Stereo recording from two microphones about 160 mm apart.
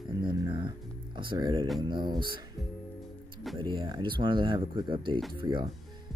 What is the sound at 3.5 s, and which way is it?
Speech, 30° right (ahead or behind).